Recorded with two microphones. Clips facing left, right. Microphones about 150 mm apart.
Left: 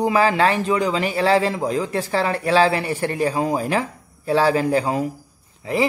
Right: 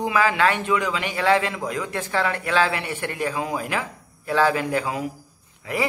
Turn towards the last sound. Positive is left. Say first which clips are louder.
# left 5 dB
turn(degrees=25)  # may be behind; listen again after turning